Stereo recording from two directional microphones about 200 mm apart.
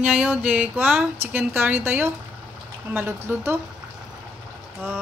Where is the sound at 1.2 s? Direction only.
10° right (ahead or behind).